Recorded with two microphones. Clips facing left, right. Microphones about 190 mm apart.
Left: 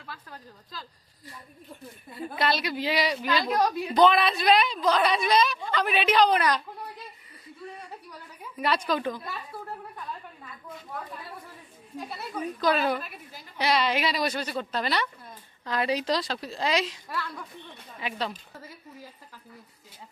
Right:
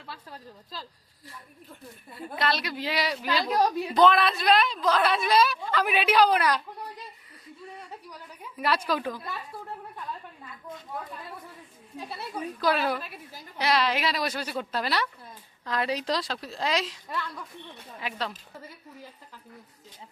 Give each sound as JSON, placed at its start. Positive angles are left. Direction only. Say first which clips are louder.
{"t": 0.1, "sound": "speech", "louder": "right 1 dB", "side_deg": -30}
{"t": 2.3, "sound": "a woman's voice", "louder": "left 1 dB", "side_deg": 5}
{"t": 8.5, "sound": "a woman's voice", "louder": "even", "side_deg": 0}
{"t": 11.9, "sound": "a woman's voice", "louder": "left 1 dB", "side_deg": 0}